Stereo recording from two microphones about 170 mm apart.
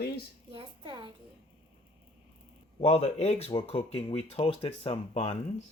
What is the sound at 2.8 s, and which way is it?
Speech, 35° left (ahead or behind).